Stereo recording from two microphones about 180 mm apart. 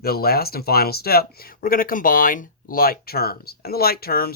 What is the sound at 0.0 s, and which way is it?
Speech, 60° left (ahead or behind).